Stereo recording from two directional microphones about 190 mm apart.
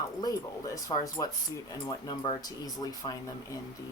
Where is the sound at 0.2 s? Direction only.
20° left (ahead or behind).